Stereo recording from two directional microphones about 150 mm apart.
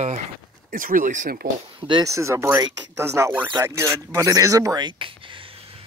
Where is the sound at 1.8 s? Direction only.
30° right (ahead or behind).